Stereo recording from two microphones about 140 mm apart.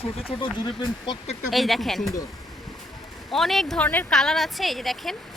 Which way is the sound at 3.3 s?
Centre (ahead or behind).